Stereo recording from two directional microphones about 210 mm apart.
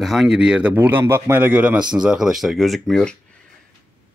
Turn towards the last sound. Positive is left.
turn(degrees=0)  # may be behind; listen again after turning